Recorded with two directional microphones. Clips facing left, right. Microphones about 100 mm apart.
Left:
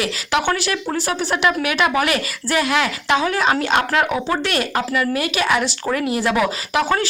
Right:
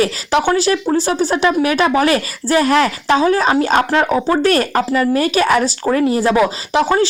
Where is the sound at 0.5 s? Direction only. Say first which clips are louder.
Right 7 dB; 30° right (ahead or behind).